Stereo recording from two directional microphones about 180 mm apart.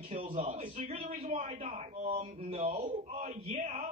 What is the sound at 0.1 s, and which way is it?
Speech, 35° right (ahead or behind).